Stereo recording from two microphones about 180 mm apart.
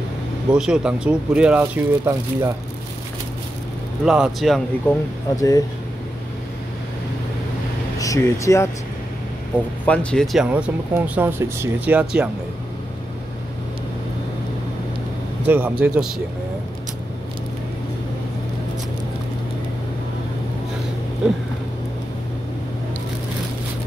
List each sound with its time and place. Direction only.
0.6 s speech: 5° right (ahead or behind)
4.0 s speech: 5° right (ahead or behind)
5.3 s speech: 20° left (ahead or behind)
8.0 s speech: 15° left (ahead or behind)
9.8 s speech: centre (ahead or behind)
15.4 s a man's voice: 10° right (ahead or behind)